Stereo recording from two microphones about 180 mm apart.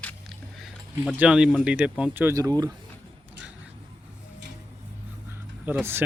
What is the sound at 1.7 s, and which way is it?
Speech, 5° right (ahead or behind).